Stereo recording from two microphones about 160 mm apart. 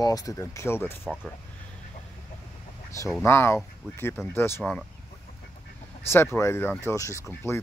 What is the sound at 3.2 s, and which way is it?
Speech, 15° left (ahead or behind).